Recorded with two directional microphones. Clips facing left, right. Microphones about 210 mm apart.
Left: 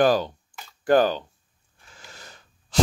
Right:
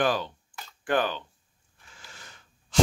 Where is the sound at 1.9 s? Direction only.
40° left (ahead or behind).